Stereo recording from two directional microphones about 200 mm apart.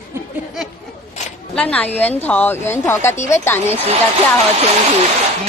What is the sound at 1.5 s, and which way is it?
A woman's voice, 5° left (ahead or behind).